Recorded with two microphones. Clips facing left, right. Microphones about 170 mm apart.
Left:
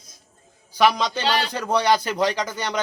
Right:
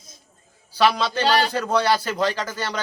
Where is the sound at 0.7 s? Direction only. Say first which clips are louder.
Left 1 dB; 15° left (ahead or behind).